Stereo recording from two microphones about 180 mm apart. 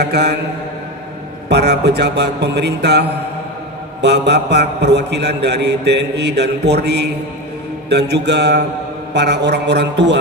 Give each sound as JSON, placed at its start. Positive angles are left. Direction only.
{"t": 0.0, "sound": "mantra", "side_deg": -65}
{"t": 1.5, "sound": "a man's voice", "side_deg": -65}